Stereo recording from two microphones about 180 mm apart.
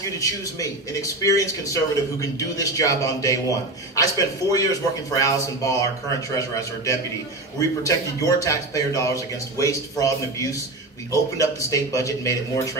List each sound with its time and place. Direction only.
0.2 s a man's voice: 20° left (ahead or behind)